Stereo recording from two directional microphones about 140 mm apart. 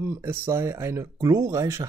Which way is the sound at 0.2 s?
15° right (ahead or behind).